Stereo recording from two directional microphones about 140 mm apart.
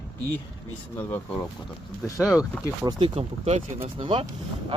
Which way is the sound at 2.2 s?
5° right (ahead or behind).